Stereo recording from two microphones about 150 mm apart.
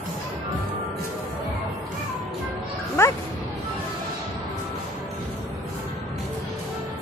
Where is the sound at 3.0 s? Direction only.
15° left (ahead or behind).